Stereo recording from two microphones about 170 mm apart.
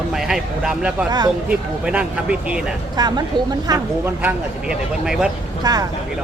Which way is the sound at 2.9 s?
25° right (ahead or behind).